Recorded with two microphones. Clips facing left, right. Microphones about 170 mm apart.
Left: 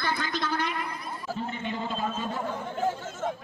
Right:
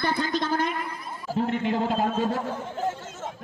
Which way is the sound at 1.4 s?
90° right.